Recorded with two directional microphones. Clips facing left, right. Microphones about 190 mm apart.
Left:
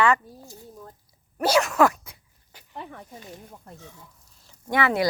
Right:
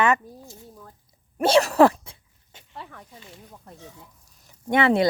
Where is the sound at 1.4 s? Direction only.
30° right (ahead or behind).